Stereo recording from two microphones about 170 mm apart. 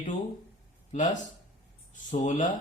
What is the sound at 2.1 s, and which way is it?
Speech, 45° left (ahead or behind).